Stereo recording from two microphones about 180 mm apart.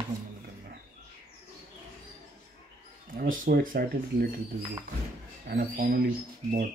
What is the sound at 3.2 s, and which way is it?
Speech, 50° right (ahead or behind).